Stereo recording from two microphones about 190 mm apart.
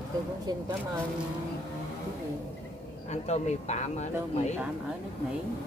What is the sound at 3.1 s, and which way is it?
Speech, 35° left (ahead or behind).